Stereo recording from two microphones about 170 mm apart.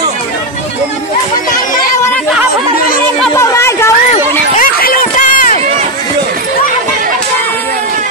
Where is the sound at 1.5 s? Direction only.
55° left (ahead or behind).